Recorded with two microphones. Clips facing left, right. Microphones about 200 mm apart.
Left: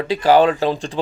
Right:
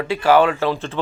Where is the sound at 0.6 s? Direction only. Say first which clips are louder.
Left 1 dB; 15° left (ahead or behind).